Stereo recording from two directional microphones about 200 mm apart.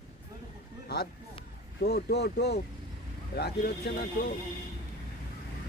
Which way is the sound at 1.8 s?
55° left (ahead or behind).